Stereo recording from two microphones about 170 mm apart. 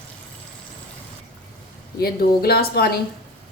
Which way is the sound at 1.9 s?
65° left (ahead or behind).